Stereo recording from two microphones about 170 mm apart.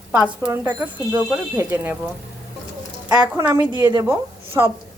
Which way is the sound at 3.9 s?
20° right (ahead or behind).